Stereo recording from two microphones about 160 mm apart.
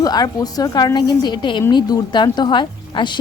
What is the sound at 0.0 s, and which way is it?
Speech, 25° left (ahead or behind).